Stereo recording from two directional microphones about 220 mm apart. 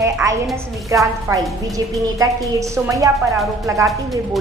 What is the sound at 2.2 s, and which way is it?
A woman's voice, 15° right (ahead or behind).